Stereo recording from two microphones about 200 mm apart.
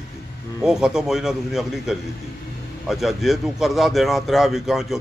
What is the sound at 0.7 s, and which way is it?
A man's voice, 5° right (ahead or behind).